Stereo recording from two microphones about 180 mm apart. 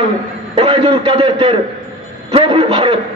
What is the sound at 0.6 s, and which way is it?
Speech, 30° right (ahead or behind).